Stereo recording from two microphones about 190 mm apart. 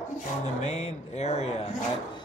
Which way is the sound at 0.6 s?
35° left (ahead or behind).